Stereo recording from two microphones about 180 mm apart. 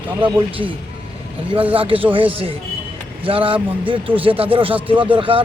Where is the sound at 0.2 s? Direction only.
30° right (ahead or behind).